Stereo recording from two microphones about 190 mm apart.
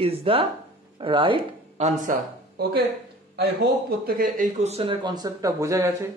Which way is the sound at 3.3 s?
55° right (ahead or behind).